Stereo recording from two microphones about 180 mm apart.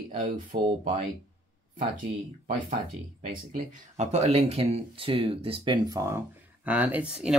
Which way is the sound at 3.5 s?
40° right (ahead or behind).